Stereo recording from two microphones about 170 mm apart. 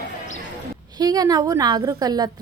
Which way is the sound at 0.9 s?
20° right (ahead or behind).